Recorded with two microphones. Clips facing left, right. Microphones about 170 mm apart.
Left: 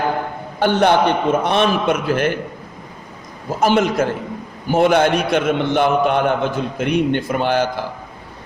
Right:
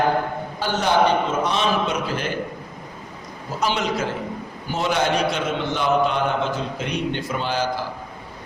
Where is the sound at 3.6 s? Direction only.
50° left (ahead or behind).